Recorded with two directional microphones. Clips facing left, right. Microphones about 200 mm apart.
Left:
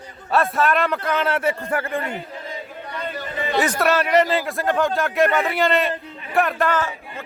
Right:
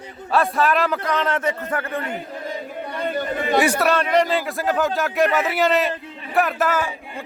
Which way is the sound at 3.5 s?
10° right (ahead or behind).